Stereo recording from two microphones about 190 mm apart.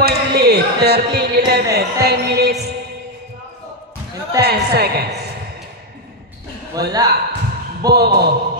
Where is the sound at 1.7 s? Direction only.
55° right (ahead or behind).